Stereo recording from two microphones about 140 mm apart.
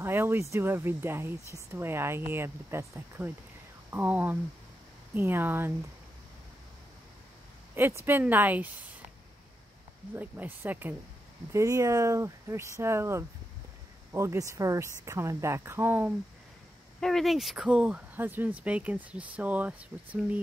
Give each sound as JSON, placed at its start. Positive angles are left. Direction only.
{"t": 0.0, "sound": "speech", "side_deg": -15}
{"t": 8.0, "sound": "speech", "side_deg": -15}
{"t": 10.1, "sound": "speech", "side_deg": -15}
{"t": 17.0, "sound": "speech", "side_deg": 0}